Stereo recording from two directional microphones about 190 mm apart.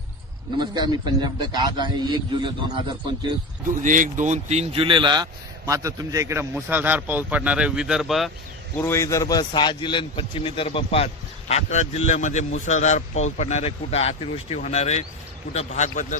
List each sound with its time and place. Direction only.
0.6 s a man's voice: 20° right (ahead or behind)
3.8 s speech: 45° right (ahead or behind); by 8.3 s centre (ahead or behind)
8.8 s a man's voice: 15° left (ahead or behind); by 16.1 s 40° left (ahead or behind)